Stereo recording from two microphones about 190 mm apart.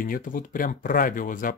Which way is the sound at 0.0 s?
45° left (ahead or behind).